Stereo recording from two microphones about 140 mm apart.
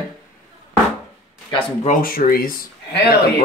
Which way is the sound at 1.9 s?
90° left.